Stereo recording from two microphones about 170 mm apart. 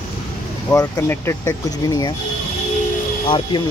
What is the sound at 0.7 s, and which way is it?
Speech, 10° left (ahead or behind).